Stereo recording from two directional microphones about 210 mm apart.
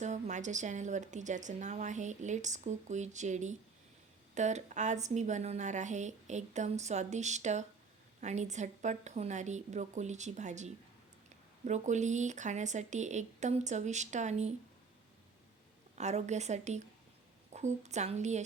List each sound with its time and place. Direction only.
0.0 s a woman's voice: 35° right (ahead or behind)
16.0 s a woman's voice: 30° right (ahead or behind)